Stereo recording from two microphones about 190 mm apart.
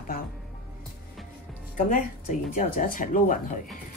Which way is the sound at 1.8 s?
45° left (ahead or behind).